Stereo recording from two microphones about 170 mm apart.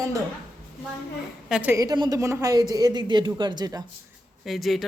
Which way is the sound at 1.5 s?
10° right (ahead or behind).